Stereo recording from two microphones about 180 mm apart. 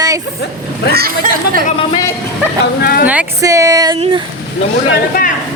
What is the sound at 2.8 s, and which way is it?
Speech, 55° left (ahead or behind).